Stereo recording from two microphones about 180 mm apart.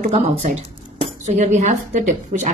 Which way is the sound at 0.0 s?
35° right (ahead or behind).